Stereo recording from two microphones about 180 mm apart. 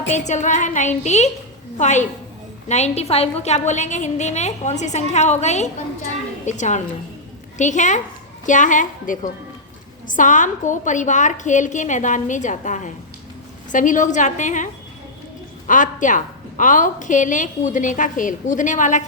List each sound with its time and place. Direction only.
0.1 s a woman's voice: 40° left (ahead or behind)